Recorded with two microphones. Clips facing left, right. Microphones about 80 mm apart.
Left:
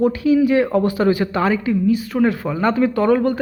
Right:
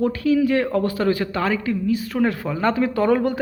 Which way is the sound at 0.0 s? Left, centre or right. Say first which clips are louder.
Left 3 dB; centre.